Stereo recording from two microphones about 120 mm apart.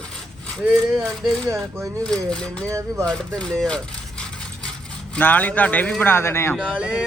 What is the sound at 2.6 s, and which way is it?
Speech, 25° right (ahead or behind).